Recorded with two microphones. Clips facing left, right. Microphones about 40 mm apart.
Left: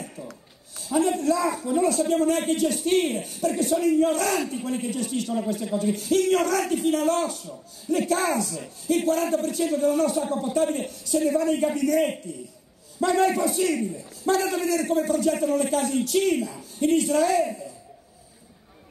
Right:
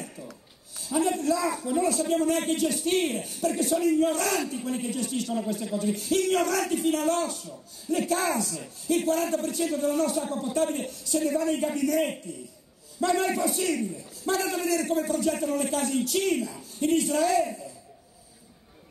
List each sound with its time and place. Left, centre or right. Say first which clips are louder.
0.0 s a sound: left 3 dB; centre
0.9 s a man's voice: left 3 dB; centre
10.2 s a man's voice: left 3 dB; centre